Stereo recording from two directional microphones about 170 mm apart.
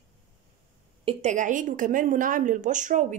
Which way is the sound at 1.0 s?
45° right (ahead or behind).